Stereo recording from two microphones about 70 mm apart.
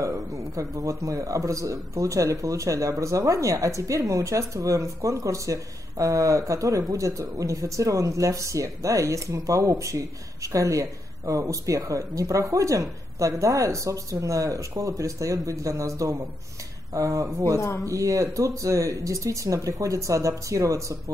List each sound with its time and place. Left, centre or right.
0.0 s a man's voice: right